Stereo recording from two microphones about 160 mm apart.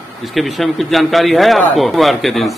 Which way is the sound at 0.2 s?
Centre (ahead or behind).